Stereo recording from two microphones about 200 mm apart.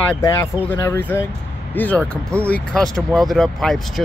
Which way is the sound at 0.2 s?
15° left (ahead or behind).